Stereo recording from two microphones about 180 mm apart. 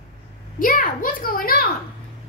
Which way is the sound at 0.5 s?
50° left (ahead or behind).